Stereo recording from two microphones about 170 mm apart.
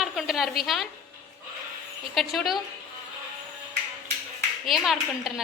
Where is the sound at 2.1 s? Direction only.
Centre (ahead or behind).